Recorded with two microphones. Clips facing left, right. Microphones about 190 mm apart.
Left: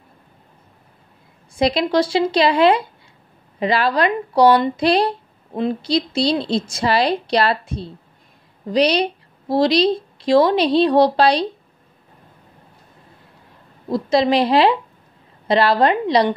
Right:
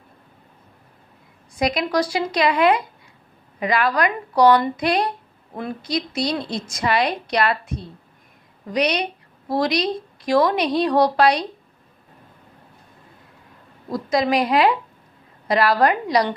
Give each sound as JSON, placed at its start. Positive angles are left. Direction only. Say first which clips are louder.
{"t": 1.6, "sound": "a woman's voice", "louder": "left 4 dB", "side_deg": 30}
{"t": 13.8, "sound": "speech", "louder": "left 4 dB", "side_deg": 25}